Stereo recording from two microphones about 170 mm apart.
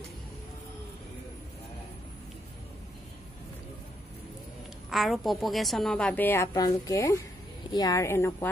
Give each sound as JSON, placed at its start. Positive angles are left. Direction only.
{"t": 4.8, "sound": "a woman's voice", "side_deg": 0}